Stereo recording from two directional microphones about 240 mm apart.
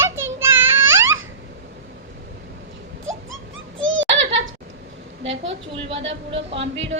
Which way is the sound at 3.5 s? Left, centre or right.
Right.